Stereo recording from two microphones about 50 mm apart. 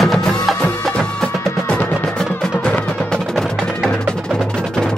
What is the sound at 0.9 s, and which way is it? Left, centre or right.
Music, centre.